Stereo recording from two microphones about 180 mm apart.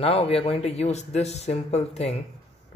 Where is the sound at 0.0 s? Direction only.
35° left (ahead or behind).